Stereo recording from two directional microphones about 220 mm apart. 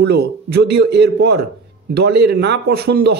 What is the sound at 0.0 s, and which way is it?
A man's voice, 45° right (ahead or behind).